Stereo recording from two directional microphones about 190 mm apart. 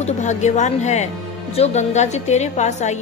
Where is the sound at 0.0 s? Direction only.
40° left (ahead or behind).